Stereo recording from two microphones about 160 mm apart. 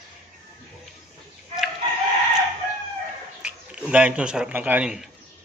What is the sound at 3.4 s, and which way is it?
A man's voice, 5° right (ahead or behind).